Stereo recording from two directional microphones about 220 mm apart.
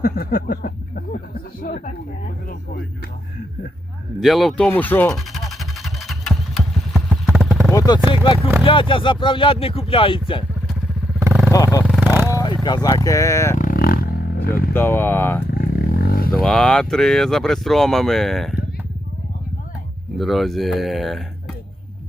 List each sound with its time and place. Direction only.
0.0 s speech: 40° left (ahead or behind)
4.2 s a sound: centre (ahead or behind)
7.7 s a sound: 15° left (ahead or behind)
8.1 s speech: 20° left (ahead or behind)
11.2 s vehicle: 10° right (ahead or behind)
11.5 s vehicle: 15° left (ahead or behind)
11.9 s vehicle: 5° right (ahead or behind)
12.3 s a sound: 20° left (ahead or behind)
12.6 s speech: 20° left (ahead or behind)
13.6 s vehicle: 40° left (ahead or behind)
14.7 s speech: 10° left (ahead or behind)
15.4 s vehicle: 45° left (ahead or behind)
16.3 s speech: centre (ahead or behind)
20.1 s speech: centre (ahead or behind)